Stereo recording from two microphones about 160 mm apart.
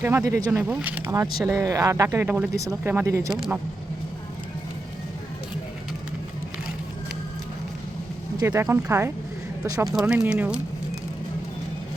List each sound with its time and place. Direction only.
0.0 s speech: 20° right (ahead or behind)
0.5 s speech: 5° right (ahead or behind)
8.4 s speech: 15° right (ahead or behind)
9.9 s speech: centre (ahead or behind)